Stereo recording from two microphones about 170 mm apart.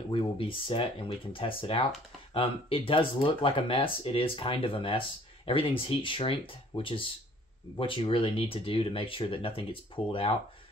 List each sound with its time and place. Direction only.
0.1 s speech: 30° left (ahead or behind)